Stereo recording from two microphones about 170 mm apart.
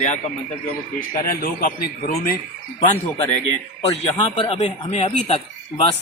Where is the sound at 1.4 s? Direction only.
60° left (ahead or behind).